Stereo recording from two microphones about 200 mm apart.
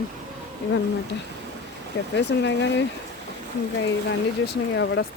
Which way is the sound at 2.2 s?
60° left (ahead or behind).